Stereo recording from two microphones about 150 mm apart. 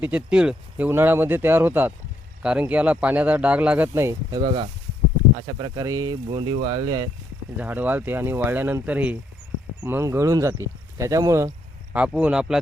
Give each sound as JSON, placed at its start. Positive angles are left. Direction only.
{"t": 0.0, "sound": "speech", "side_deg": -10}
{"t": 4.4, "sound": "speech", "side_deg": -30}
{"t": 6.2, "sound": "speech", "side_deg": -35}
{"t": 7.5, "sound": "speech", "side_deg": -10}
{"t": 11.9, "sound": "speech", "side_deg": -10}